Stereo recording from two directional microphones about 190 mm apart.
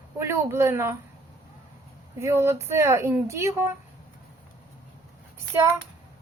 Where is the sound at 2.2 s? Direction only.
15° right (ahead or behind).